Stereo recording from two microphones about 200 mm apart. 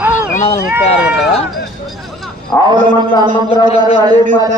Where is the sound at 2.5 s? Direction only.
10° left (ahead or behind).